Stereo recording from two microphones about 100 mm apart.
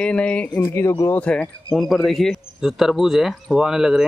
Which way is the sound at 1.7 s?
Centre (ahead or behind).